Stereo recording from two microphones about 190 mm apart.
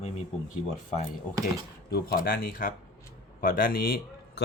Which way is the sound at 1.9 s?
55° left (ahead or behind).